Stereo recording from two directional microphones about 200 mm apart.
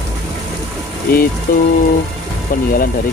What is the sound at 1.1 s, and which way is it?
Speech, 50° left (ahead or behind).